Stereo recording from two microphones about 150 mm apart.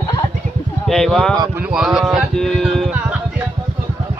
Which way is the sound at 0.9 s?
5° left (ahead or behind).